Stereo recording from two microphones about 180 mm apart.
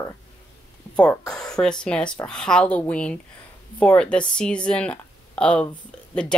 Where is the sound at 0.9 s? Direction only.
5° left (ahead or behind).